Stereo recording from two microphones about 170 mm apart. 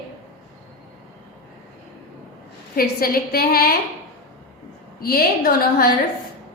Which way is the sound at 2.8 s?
60° left (ahead or behind).